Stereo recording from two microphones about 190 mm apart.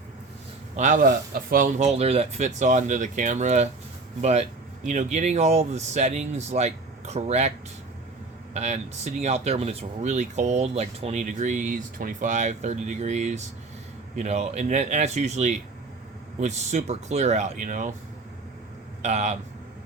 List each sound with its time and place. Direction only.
0.8 s speech: 45° right (ahead or behind)
8.5 s speech: 35° right (ahead or behind)
19.0 s speech: 35° right (ahead or behind)